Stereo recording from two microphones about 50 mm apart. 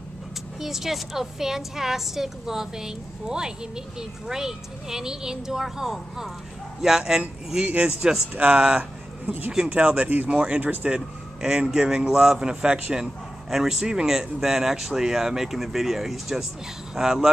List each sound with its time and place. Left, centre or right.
0.6 s a woman's voice: centre
7.6 s speech: right
9.2 s speech: right
9.5 s a woman's voice: centre
9.8 s speech: right
10.3 s speech: right
10.6 s speech: right
11.4 s a woman's voice: centre
12.9 s a woman's voice: centre